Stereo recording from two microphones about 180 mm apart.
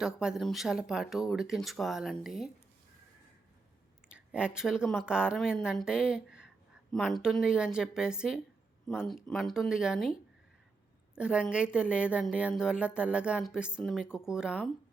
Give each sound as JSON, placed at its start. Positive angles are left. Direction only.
{"t": 0.0, "sound": "speech", "side_deg": -5}
{"t": 4.1, "sound": "a woman's voice", "side_deg": -5}